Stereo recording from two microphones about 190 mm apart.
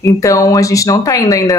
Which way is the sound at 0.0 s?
15° left (ahead or behind).